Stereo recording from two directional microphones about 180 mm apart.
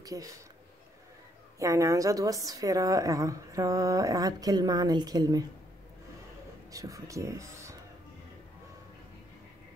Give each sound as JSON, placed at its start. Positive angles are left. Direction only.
{"t": 0.0, "sound": "speech", "side_deg": -20}
{"t": 1.6, "sound": "a woman's voice", "side_deg": -15}
{"t": 6.7, "sound": "speech", "side_deg": -20}